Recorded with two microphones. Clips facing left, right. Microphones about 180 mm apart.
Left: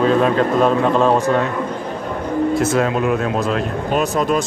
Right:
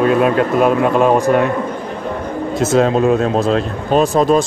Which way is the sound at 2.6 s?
25° right (ahead or behind).